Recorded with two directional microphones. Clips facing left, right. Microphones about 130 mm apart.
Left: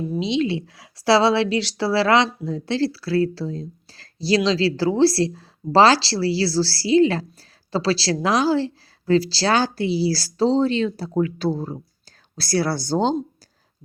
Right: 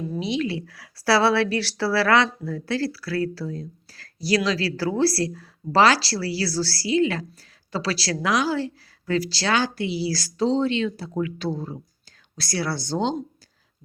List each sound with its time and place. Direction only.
0.1 s a woman's voice: 20° left (ahead or behind); by 13.1 s 40° left (ahead or behind)